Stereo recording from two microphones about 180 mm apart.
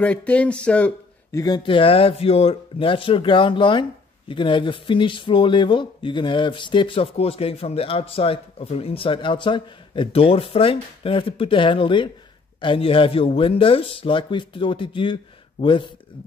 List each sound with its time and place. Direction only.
0.0 s speech: 5° left (ahead or behind)
1.4 s speech: 25° left (ahead or behind)